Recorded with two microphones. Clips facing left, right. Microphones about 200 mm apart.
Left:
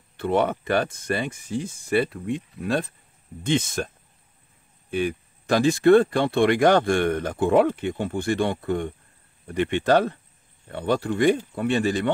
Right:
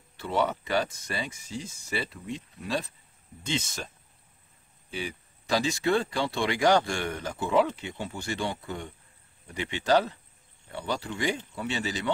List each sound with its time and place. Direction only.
0.2 s speech: 55° left (ahead or behind)
4.9 s speech: 55° left (ahead or behind)